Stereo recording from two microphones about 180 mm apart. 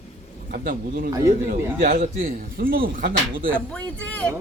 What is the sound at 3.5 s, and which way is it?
Speech, 5° left (ahead or behind).